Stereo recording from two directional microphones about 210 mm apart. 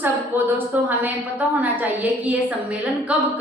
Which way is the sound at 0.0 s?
10° right (ahead or behind).